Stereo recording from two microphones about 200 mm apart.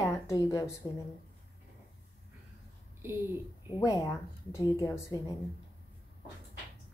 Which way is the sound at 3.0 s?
10° right (ahead or behind).